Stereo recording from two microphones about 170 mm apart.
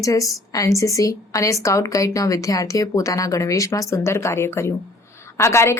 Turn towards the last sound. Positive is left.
turn(degrees=15)  # may be behind; listen again after turning